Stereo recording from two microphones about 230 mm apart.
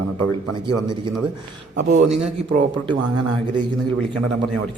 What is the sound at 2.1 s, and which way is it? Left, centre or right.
Speech, right.